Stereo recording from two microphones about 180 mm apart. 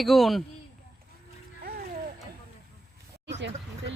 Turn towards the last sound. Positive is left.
turn(degrees=-80)